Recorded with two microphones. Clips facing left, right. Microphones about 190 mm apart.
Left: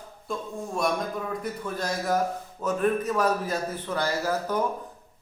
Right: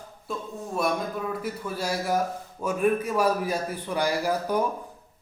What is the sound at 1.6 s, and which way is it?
Speech, 10° right (ahead or behind).